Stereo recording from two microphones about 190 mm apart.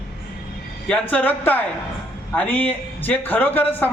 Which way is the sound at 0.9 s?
10° left (ahead or behind).